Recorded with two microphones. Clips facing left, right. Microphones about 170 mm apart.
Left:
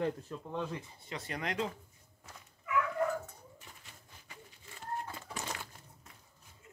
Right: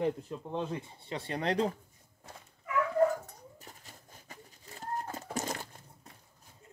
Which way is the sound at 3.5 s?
40° right (ahead or behind).